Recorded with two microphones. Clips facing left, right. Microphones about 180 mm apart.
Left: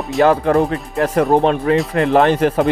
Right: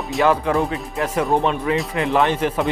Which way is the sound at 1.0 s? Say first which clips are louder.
Left 6 dB; 55° left (ahead or behind).